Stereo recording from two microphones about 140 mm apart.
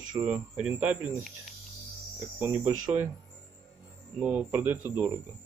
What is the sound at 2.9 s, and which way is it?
Speech, 20° right (ahead or behind).